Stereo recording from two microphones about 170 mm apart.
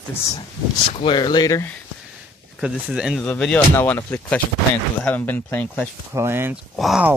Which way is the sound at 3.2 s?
5° left (ahead or behind).